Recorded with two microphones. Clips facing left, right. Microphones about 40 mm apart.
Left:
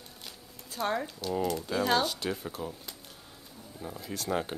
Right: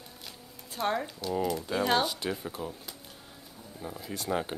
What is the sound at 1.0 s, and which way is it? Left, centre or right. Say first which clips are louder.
Speech: even; centre.